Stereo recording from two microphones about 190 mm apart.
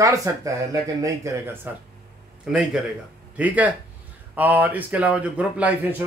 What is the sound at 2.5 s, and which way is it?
A man's voice, 5° right (ahead or behind).